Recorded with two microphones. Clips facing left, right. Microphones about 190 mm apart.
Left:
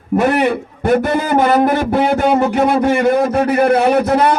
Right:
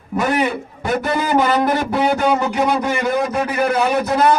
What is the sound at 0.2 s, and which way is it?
A man's voice, 60° left (ahead or behind).